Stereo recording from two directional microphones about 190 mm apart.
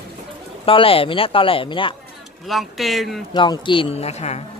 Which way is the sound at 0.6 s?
30° left (ahead or behind).